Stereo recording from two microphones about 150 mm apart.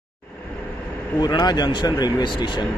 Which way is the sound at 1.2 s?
30° left (ahead or behind).